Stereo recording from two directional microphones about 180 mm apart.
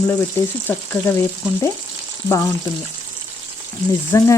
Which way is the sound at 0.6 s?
10° left (ahead or behind).